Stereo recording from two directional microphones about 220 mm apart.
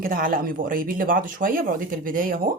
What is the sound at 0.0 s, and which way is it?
Speech, 40° right (ahead or behind).